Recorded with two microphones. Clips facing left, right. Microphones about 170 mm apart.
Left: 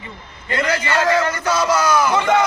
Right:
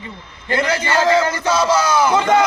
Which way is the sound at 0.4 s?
30° right (ahead or behind).